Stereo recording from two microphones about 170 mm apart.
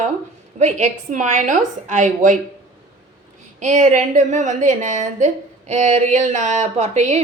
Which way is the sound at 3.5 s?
45° right (ahead or behind).